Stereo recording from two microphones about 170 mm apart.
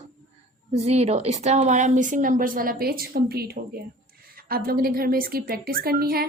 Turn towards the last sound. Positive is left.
turn(degrees=-60)  # may be behind; listen again after turning